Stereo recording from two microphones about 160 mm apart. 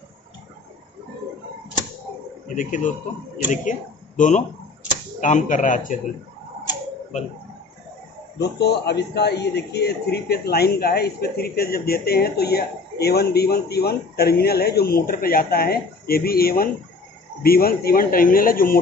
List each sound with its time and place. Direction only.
2.4 s a man's voice: 55° left (ahead or behind)
4.2 s speech: 50° left (ahead or behind)
8.4 s a man's voice: 90° left; by 18.8 s 65° left (ahead or behind)